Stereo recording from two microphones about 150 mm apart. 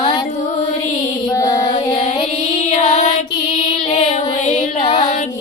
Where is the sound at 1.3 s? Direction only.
20° left (ahead or behind).